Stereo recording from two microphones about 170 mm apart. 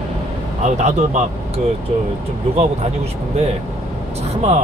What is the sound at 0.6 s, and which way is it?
Speech, 45° right (ahead or behind).